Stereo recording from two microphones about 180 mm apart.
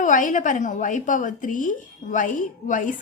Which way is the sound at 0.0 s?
45° left (ahead or behind).